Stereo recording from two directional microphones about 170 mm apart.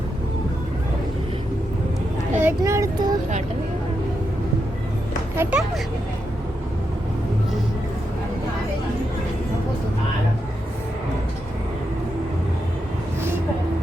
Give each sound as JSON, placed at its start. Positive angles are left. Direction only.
{"t": 2.4, "sound": "speech", "side_deg": -15}
{"t": 5.4, "sound": "speech", "side_deg": -5}